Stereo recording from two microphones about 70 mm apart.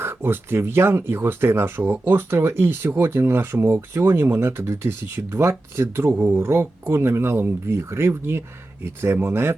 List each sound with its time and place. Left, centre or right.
0.0 s speech: right